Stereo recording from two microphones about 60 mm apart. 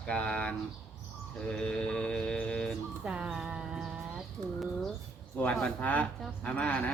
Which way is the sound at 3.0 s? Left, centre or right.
Centre.